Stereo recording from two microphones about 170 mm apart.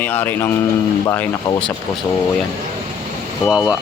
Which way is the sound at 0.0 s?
10° left (ahead or behind).